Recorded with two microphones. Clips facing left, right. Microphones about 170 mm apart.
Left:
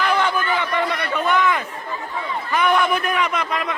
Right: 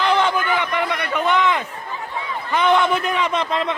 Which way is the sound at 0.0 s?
20° right (ahead or behind).